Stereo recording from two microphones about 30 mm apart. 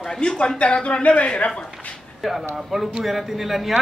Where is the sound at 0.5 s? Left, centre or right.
Left.